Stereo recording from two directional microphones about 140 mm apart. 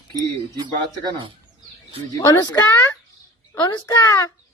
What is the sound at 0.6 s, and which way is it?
Speech, 30° right (ahead or behind).